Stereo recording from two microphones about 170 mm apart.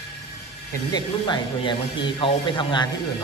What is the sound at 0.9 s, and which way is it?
Speech, 25° left (ahead or behind).